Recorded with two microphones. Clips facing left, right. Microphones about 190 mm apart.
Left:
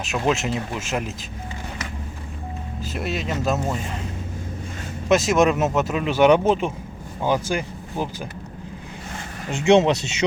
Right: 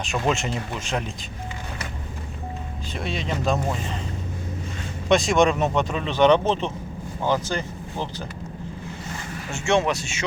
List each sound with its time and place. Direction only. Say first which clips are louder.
0.0 s speech: left 2 dB; centre (ahead or behind)
2.8 s speech: left 3 dB; 5° left (ahead or behind)
5.0 s speech: left 1 dB; 5° left (ahead or behind)
9.5 s speech: left 6 dB; 20° left (ahead or behind)